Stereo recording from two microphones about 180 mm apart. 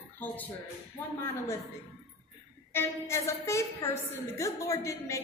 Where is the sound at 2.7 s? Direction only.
15° left (ahead or behind).